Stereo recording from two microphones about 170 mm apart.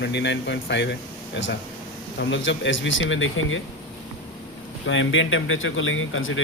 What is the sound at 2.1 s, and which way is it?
Speech, 90° left.